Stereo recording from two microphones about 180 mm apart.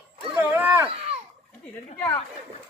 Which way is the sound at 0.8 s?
35° right (ahead or behind).